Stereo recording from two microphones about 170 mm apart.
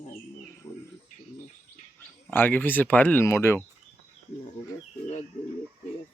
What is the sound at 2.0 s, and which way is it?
Speech, 10° left (ahead or behind).